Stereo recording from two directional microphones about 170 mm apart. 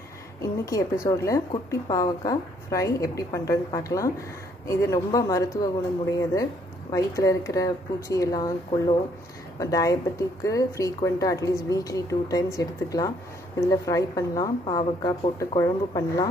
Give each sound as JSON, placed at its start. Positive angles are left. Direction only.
{"t": 0.4, "sound": "speech", "side_deg": 20}
{"t": 6.9, "sound": "speech", "side_deg": 20}